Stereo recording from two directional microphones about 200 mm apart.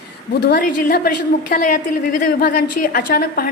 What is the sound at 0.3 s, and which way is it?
A woman's voice, 55° left (ahead or behind).